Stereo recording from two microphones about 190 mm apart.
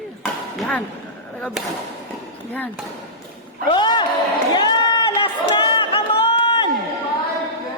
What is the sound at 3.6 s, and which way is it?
Speech, 25° left (ahead or behind).